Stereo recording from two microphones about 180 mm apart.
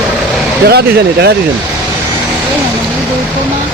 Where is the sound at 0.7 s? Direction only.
60° right (ahead or behind).